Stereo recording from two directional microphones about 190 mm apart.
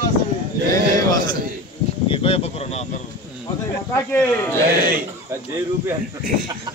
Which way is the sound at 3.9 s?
10° left (ahead or behind).